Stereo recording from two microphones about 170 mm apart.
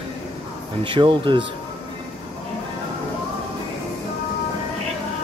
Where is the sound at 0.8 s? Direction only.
30° right (ahead or behind).